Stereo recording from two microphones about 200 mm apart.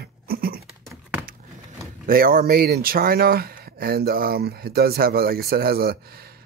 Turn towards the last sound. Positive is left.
turn(degrees=-50)  # may be behind; listen again after turning